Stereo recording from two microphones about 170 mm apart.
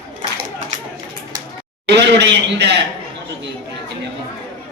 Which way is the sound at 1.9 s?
90° right.